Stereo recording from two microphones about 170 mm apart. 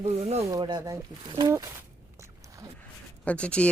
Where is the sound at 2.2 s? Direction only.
20° right (ahead or behind).